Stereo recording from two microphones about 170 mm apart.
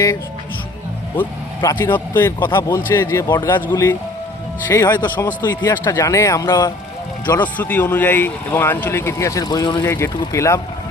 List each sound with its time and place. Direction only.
1.1 s speech: 10° left (ahead or behind)
7.5 s speech: 10° left (ahead or behind)